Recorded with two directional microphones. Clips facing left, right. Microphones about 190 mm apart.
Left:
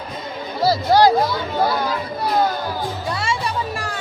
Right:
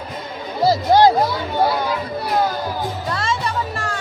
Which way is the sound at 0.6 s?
20° right (ahead or behind).